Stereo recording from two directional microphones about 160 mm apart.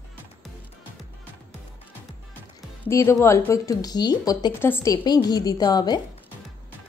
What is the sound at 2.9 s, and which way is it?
Speech, 20° left (ahead or behind).